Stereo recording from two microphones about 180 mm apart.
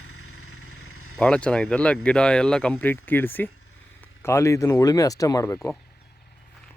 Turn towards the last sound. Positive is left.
turn(degrees=10)  # may be behind; listen again after turning